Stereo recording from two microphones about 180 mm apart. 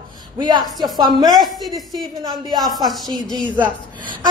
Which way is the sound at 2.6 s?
Centre (ahead or behind).